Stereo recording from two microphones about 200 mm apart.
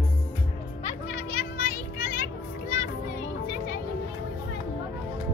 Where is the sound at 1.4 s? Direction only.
45° left (ahead or behind).